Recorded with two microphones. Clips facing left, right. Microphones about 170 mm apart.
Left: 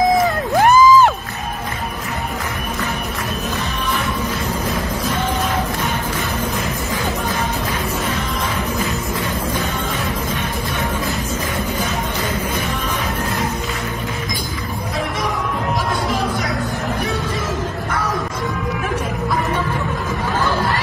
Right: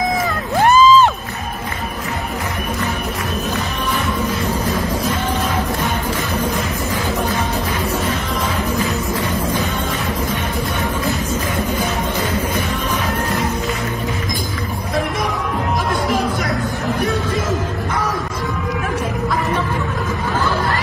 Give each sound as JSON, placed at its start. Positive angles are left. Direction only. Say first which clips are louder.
{"t": 0.7, "sound": "music", "louder": "even", "side_deg": 15}